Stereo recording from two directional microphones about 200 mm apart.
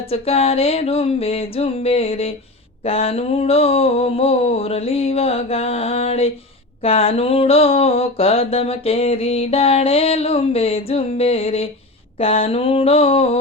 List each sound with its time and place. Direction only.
0.1 s mantra: 30° left (ahead or behind)